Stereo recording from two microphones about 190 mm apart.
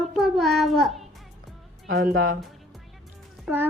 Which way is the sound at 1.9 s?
60° right (ahead or behind).